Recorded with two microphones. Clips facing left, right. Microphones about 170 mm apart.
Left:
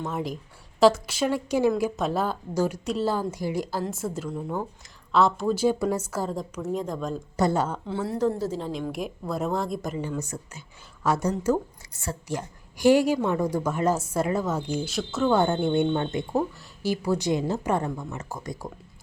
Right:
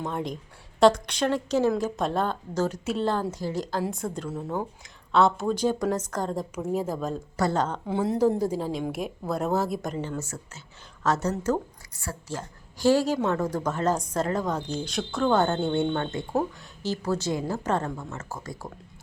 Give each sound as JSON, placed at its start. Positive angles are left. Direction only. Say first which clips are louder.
{"t": 0.1, "sound": "speech", "louder": "left 1 dB", "side_deg": 5}
{"t": 6.6, "sound": "speech", "louder": "right 1 dB", "side_deg": -5}
{"t": 7.5, "sound": "speech", "louder": "left 1 dB", "side_deg": 10}
{"t": 7.9, "sound": "speech", "louder": "right 3 dB", "side_deg": -15}
{"t": 10.2, "sound": "speech", "louder": "left 2 dB", "side_deg": 15}